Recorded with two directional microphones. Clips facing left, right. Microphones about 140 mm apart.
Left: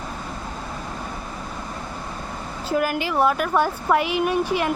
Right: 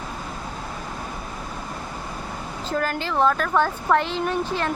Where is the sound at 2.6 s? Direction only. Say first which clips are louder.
Left 3 dB; 10° left (ahead or behind).